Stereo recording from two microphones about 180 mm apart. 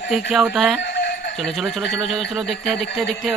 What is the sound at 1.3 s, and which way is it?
Speech, centre (ahead or behind).